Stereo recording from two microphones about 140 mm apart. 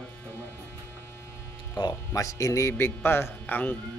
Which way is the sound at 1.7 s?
25° left (ahead or behind).